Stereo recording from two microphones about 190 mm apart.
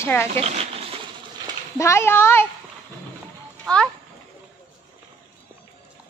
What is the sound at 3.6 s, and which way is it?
Speech, 5° left (ahead or behind).